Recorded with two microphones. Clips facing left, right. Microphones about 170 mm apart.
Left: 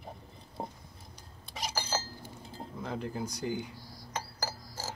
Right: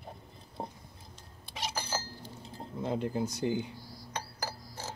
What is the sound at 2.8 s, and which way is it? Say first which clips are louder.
Speech: right 5 dB; 25° right (ahead or behind).